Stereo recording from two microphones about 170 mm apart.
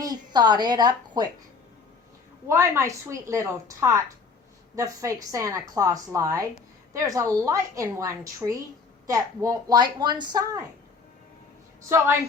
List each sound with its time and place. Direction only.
0.0 s a woman's voice: 25° right (ahead or behind)
2.5 s a woman's voice: 15° right (ahead or behind)
11.8 s a woman's voice: 15° right (ahead or behind)